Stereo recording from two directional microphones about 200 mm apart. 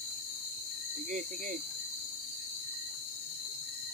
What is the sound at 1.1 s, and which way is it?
Speech, 40° right (ahead or behind).